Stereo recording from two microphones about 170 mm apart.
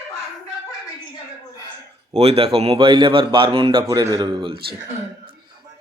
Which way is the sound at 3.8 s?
20° right (ahead or behind).